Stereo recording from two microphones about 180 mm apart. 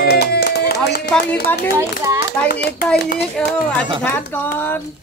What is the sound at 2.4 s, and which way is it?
Speech, 65° left (ahead or behind).